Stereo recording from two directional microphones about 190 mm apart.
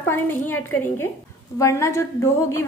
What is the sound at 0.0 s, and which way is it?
A woman's voice, 10° left (ahead or behind).